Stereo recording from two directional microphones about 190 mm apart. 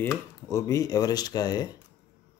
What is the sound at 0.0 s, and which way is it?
Speech, 15° left (ahead or behind).